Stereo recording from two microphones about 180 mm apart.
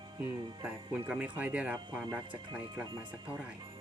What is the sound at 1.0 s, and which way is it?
Speech, 10° right (ahead or behind).